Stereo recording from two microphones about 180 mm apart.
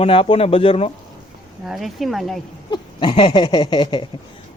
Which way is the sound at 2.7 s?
25° left (ahead or behind).